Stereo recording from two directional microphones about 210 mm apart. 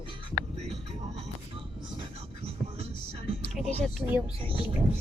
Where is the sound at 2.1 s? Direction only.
30° right (ahead or behind).